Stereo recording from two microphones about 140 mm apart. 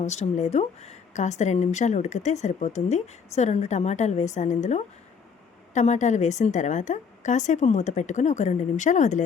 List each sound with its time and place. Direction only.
0.0 s a woman's voice: 55° left (ahead or behind)